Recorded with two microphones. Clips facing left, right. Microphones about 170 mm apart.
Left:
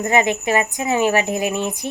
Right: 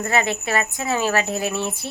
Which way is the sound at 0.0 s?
15° left (ahead or behind).